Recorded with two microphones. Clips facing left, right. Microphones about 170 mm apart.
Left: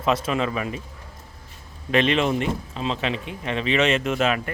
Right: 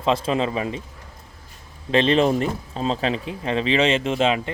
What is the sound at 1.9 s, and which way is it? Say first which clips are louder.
Speech: right 3 dB; 30° right (ahead or behind).